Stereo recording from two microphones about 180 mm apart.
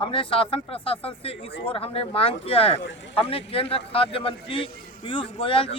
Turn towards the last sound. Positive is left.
turn(degrees=30)  # may be behind; listen again after turning